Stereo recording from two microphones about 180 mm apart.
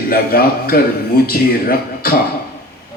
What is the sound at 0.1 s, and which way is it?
A man's voice, 55° left (ahead or behind).